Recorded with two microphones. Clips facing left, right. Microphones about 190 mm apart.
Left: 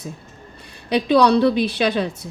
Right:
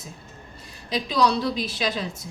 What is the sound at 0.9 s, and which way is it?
A woman's voice, 65° left (ahead or behind).